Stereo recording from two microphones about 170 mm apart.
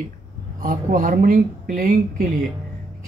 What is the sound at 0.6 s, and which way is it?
Speech, 50° right (ahead or behind).